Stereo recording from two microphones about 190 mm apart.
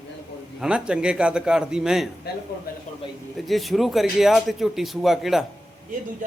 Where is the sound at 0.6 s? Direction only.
5° right (ahead or behind).